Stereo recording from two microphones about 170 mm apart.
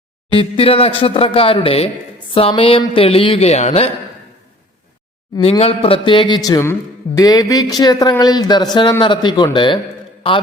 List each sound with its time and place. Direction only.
0.3 s a man's voice: 35° left (ahead or behind)
5.4 s speech: 35° left (ahead or behind)